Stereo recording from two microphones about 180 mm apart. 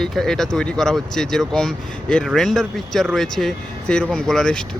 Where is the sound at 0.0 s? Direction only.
Centre (ahead or behind).